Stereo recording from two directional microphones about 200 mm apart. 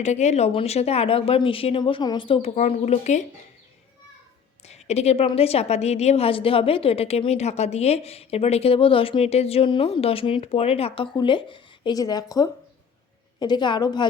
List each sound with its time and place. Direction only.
0.0 s a woman's voice: 35° left (ahead or behind)
4.6 s a woman's voice: 30° left (ahead or behind)